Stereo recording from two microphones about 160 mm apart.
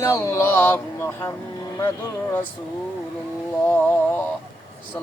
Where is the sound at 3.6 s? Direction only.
10° left (ahead or behind).